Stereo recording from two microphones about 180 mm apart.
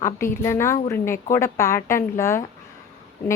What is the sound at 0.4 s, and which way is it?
A woman's voice, 15° left (ahead or behind).